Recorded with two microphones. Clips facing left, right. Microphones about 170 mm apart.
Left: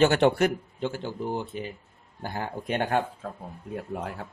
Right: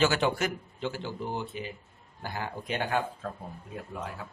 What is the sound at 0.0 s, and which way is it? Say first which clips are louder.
Speech: left 6 dB; 60° left (ahead or behind).